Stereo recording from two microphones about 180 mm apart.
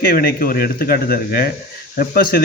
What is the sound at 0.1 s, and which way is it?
A man's voice, 55° left (ahead or behind).